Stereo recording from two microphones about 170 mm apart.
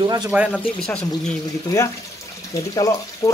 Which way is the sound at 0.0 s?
25° right (ahead or behind).